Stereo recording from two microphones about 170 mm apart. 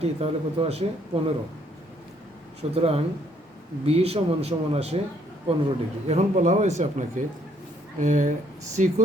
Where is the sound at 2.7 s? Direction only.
35° right (ahead or behind).